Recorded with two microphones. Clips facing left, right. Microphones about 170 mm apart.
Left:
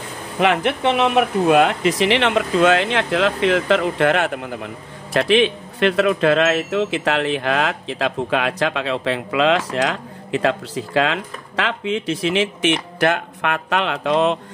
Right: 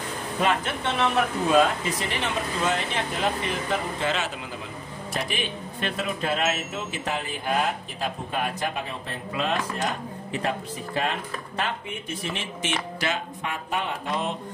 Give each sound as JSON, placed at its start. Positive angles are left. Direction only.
{"t": 0.4, "sound": "speech", "side_deg": 75}
{"t": 5.1, "sound": "speech", "side_deg": 80}